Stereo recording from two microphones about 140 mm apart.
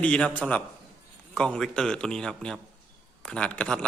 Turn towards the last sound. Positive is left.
turn(degrees=5)  # may be behind; listen again after turning